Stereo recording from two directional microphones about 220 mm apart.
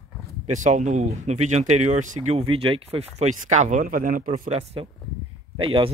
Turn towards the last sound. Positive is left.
turn(degrees=-25)  # may be behind; listen again after turning